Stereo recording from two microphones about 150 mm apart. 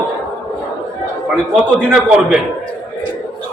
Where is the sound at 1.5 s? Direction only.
10° right (ahead or behind).